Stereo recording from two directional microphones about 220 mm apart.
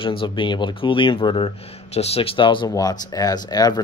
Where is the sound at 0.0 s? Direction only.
25° left (ahead or behind).